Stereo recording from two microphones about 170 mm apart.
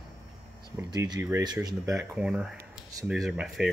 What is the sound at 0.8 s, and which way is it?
Speech, 20° right (ahead or behind).